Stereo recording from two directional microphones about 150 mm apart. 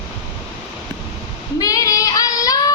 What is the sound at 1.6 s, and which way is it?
Child singing, 20° left (ahead or behind).